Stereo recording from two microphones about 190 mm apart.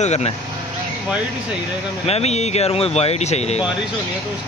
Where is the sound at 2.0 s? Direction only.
35° left (ahead or behind).